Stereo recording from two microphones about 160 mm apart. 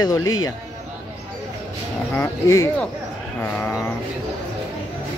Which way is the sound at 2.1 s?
15° left (ahead or behind).